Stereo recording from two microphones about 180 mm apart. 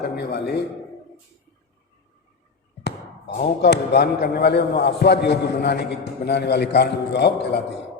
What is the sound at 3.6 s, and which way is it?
A man's voice, 65° left (ahead or behind).